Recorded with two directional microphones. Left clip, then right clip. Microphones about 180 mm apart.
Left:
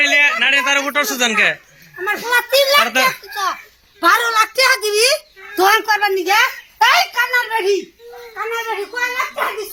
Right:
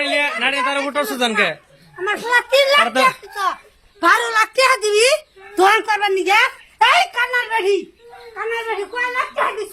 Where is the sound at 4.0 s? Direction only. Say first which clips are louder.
Left 1 dB; centre (ahead or behind).